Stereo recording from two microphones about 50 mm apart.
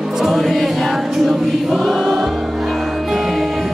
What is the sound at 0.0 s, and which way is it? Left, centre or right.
Choir, centre.